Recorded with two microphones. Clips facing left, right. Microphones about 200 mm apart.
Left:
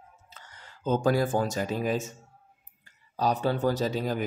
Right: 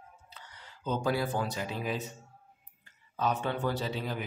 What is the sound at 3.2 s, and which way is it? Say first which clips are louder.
A man's voice: left 5 dB; 35° left (ahead or behind).